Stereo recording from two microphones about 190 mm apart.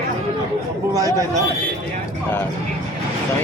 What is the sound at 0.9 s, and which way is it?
Speech, 20° right (ahead or behind).